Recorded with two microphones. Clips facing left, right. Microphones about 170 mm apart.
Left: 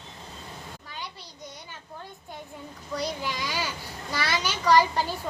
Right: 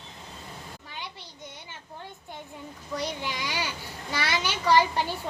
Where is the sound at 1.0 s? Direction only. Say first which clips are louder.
Left 1 dB; 40° left (ahead or behind).